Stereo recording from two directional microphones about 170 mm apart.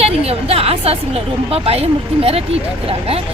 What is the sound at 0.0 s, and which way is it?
A woman's voice, 35° right (ahead or behind).